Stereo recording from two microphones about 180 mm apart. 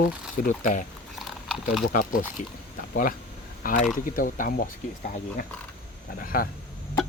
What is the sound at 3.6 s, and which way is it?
Speech, 50° left (ahead or behind).